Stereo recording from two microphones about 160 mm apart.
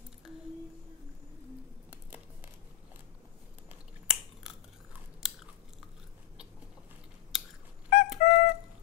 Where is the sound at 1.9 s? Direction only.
10° right (ahead or behind).